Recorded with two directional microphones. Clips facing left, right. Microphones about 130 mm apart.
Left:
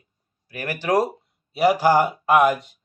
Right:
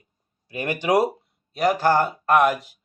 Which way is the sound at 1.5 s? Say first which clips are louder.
Left 2 dB; 5° left (ahead or behind).